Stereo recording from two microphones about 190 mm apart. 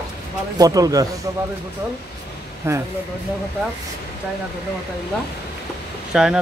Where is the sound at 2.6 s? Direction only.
15° right (ahead or behind).